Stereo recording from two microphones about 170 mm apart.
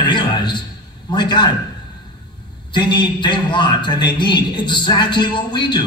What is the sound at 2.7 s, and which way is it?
A man's voice, 25° left (ahead or behind).